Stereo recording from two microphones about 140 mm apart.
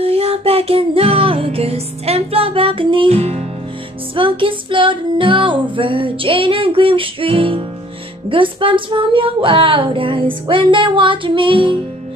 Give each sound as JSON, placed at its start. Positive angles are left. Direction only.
{"t": 0.0, "sound": "music", "side_deg": -45}
{"t": 4.1, "sound": "music", "side_deg": -40}